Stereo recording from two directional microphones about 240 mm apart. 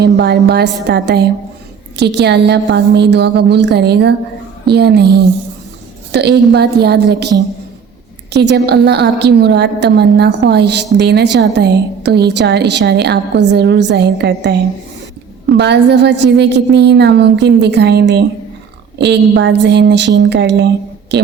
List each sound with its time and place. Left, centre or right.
0.0 s a woman's voice: right